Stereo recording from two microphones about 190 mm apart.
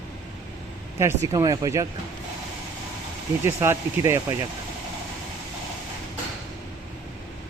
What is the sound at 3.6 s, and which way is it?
Speech, 15° right (ahead or behind).